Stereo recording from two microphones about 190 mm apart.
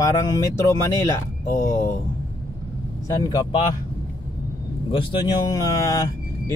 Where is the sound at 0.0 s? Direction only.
20° left (ahead or behind).